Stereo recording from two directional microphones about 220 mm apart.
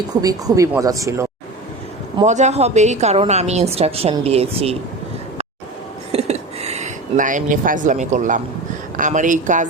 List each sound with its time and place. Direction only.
0.1 s speech: 15° right (ahead or behind)
2.2 s a woman's voice: 30° right (ahead or behind)
6.1 s a sound: 30° right (ahead or behind)
9.0 s speech: 35° right (ahead or behind)